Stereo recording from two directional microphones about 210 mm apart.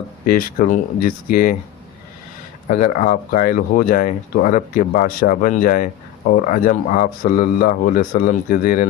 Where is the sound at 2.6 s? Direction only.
35° left (ahead or behind).